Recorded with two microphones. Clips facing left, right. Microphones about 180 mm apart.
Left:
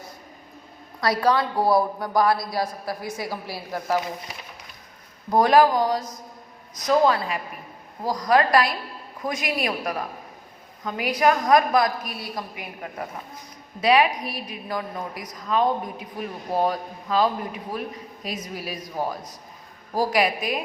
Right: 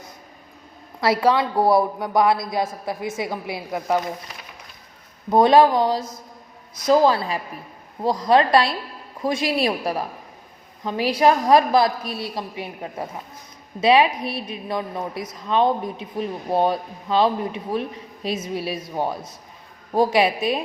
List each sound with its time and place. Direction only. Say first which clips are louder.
1.0 s a woman's voice: right 3 dB; 25° right (ahead or behind)
5.3 s a woman's voice: right 3 dB; 25° right (ahead or behind)